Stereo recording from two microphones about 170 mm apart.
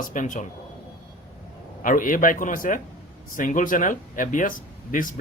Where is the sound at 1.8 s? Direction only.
50° left (ahead or behind).